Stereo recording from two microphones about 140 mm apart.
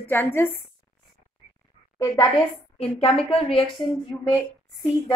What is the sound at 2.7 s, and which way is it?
Speech, 45° left (ahead or behind).